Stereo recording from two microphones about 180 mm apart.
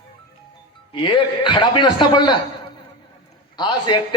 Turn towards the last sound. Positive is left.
turn(degrees=25)  # may be behind; listen again after turning